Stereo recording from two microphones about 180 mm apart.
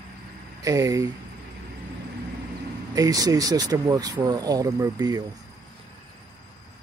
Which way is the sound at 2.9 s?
20° right (ahead or behind).